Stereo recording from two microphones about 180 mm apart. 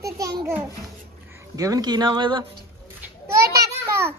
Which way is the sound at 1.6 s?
20° right (ahead or behind).